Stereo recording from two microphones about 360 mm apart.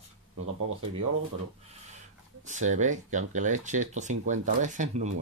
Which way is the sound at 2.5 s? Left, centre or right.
Centre.